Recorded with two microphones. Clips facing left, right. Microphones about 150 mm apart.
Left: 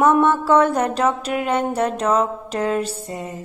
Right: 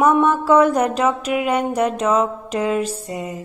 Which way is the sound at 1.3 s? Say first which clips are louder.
Right 1 dB; 10° right (ahead or behind).